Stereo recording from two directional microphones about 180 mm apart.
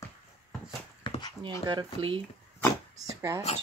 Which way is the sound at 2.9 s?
20° right (ahead or behind).